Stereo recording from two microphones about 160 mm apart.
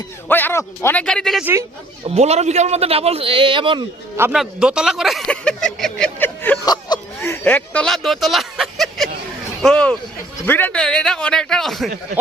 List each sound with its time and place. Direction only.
0.3 s speech: 10° left (ahead or behind)
1.0 s a man's voice: 5° left (ahead or behind)
2.0 s speech: 40° right (ahead or behind)
4.2 s speech: 5° right (ahead or behind); by 6.6 s 10° left (ahead or behind)
6.7 s whimper: 25° left (ahead or behind)
7.2 s a man's voice: 15° left (ahead or behind)